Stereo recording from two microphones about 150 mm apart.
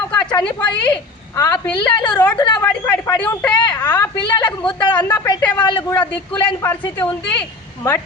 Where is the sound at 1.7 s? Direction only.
30° left (ahead or behind).